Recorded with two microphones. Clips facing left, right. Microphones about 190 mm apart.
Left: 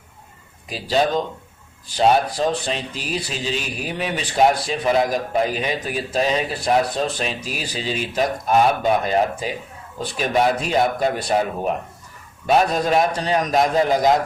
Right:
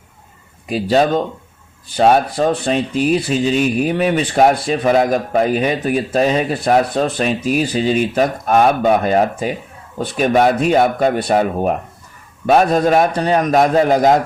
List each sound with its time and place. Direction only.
0.7 s speech: 55° right (ahead or behind)